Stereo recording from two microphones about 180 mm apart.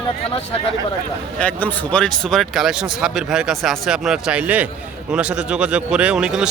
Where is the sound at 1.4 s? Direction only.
5° left (ahead or behind).